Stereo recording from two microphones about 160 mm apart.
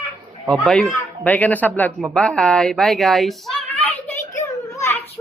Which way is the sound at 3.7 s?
10° left (ahead or behind).